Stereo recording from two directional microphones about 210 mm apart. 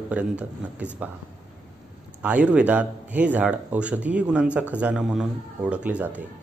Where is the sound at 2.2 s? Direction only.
5° right (ahead or behind).